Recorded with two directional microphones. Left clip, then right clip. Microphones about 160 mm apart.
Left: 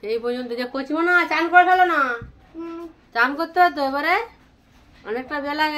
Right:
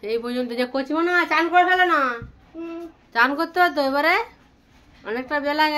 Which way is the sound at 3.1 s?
35° right (ahead or behind).